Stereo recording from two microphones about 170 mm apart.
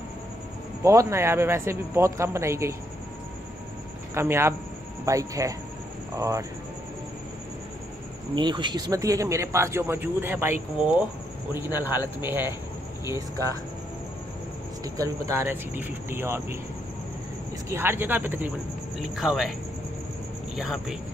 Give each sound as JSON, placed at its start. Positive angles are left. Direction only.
{"t": 0.8, "sound": "speech", "side_deg": -15}
{"t": 4.1, "sound": "speech", "side_deg": -15}
{"t": 8.4, "sound": "speech", "side_deg": -25}
{"t": 12.2, "sound": "speech", "side_deg": -15}
{"t": 15.0, "sound": "speech", "side_deg": -15}
{"t": 17.6, "sound": "speech", "side_deg": -15}
{"t": 20.5, "sound": "speech", "side_deg": 0}